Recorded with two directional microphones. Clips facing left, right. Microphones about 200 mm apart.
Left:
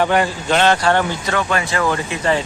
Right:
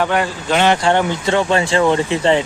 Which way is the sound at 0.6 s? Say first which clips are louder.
Right 2 dB; 20° right (ahead or behind).